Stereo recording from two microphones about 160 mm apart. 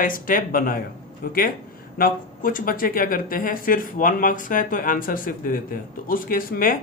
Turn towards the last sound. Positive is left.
turn(degrees=65)  # may be behind; listen again after turning